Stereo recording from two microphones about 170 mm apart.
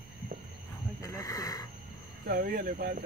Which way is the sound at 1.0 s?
20° left (ahead or behind).